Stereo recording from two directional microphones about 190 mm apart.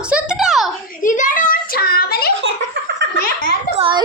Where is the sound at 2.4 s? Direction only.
65° right (ahead or behind).